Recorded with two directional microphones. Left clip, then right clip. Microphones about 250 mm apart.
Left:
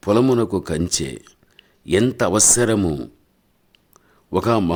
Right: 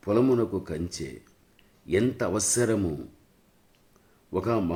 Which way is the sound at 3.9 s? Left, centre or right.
Left.